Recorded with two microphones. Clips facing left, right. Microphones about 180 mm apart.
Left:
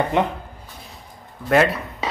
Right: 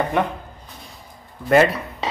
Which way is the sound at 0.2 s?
20° left (ahead or behind).